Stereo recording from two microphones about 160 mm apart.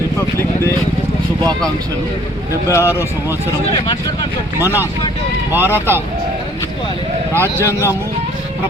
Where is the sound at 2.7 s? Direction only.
15° left (ahead or behind).